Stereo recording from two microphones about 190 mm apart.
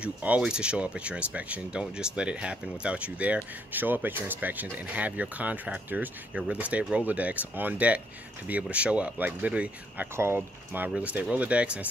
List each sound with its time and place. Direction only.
0.0 s speech: 5° right (ahead or behind)